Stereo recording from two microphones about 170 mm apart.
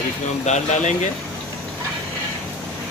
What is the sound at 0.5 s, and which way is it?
Speech, 45° left (ahead or behind).